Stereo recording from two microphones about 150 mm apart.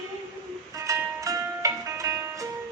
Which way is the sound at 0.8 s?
20° right (ahead or behind).